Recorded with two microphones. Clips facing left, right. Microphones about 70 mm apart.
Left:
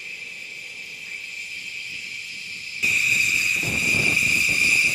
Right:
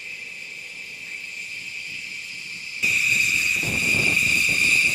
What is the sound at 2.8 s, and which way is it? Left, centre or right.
Vehicle, centre.